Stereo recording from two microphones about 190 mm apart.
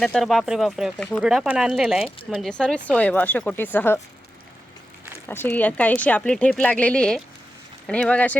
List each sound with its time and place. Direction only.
0.0 s a woman's voice: 5° left (ahead or behind)
5.3 s a woman's voice: 10° left (ahead or behind)